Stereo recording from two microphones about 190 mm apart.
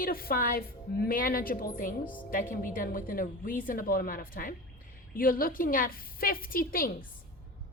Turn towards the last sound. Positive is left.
turn(degrees=50)  # may be behind; listen again after turning